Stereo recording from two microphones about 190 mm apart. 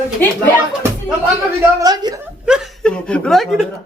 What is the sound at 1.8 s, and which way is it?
Speech, 20° right (ahead or behind).